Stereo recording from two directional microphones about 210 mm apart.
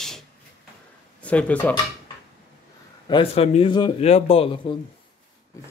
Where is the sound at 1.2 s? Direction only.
5° left (ahead or behind).